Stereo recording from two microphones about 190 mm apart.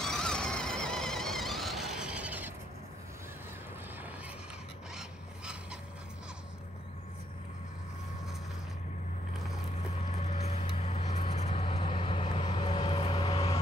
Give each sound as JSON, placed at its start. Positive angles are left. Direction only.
{"t": 0.0, "sound": "vehicle", "side_deg": 5}
{"t": 4.9, "sound": "a sound", "side_deg": -5}
{"t": 10.1, "sound": "vehicle", "side_deg": 35}